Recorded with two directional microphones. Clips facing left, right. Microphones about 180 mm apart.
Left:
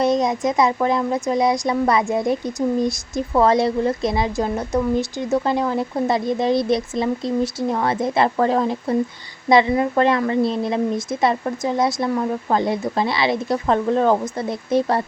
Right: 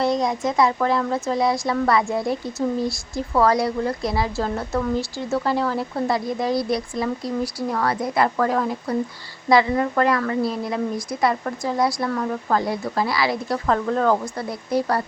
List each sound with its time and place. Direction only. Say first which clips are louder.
0.0 s speech: left 3 dB; 20° left (ahead or behind)